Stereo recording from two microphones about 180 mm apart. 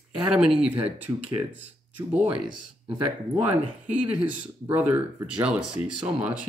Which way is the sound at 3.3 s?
10° right (ahead or behind).